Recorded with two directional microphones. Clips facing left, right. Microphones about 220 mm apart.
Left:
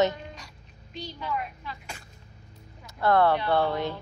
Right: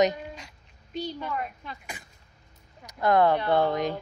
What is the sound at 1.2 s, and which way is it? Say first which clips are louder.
Speech: even; 45° right (ahead or behind).